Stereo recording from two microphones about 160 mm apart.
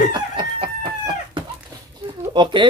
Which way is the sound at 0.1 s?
30° right (ahead or behind).